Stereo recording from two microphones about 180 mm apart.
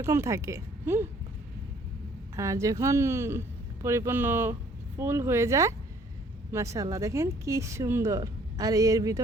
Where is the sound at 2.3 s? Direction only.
15° right (ahead or behind).